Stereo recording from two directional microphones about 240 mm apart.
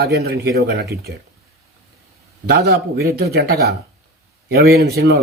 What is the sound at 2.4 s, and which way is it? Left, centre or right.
A man's voice, right.